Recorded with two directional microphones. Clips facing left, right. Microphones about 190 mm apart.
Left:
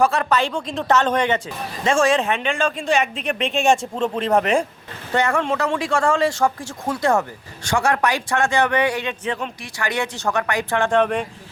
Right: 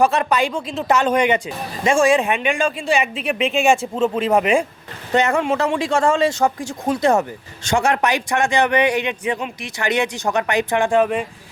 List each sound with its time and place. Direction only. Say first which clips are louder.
0.0 s speech: right 2 dB; 20° right (ahead or behind)
5.1 s speech: right 3 dB; 20° right (ahead or behind)